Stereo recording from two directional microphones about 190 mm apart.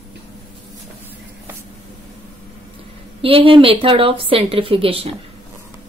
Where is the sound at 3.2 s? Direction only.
30° right (ahead or behind).